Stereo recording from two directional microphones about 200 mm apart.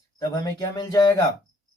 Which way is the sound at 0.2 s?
20° left (ahead or behind).